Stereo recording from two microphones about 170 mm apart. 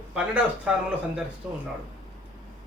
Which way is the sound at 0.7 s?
5° right (ahead or behind).